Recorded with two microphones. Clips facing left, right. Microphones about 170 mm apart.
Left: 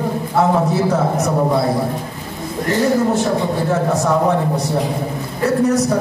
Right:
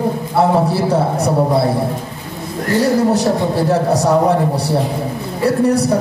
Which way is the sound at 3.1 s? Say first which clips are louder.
Right 2 dB; 35° right (ahead or behind).